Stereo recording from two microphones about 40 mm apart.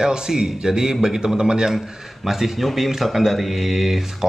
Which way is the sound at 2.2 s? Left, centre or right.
Centre.